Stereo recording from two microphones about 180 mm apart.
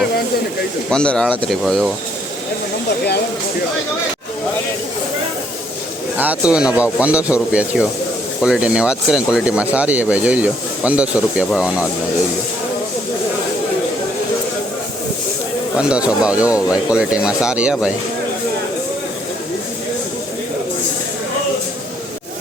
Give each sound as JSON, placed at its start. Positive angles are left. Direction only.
{"t": 0.9, "sound": "speech", "side_deg": 5}
{"t": 6.1, "sound": "speech", "side_deg": -5}
{"t": 15.8, "sound": "speech", "side_deg": -5}